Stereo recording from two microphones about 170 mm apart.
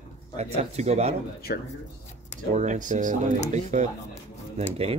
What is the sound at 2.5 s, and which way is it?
Speech, 45° right (ahead or behind).